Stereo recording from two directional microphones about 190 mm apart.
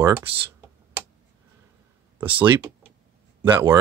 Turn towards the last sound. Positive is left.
turn(degrees=-15)  # may be behind; listen again after turning